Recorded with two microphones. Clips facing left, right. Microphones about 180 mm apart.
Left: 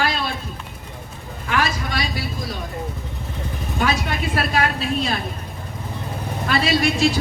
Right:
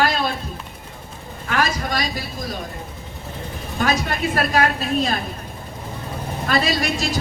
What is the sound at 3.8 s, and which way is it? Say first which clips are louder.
A woman's voice: right 1 dB; 45° right (ahead or behind).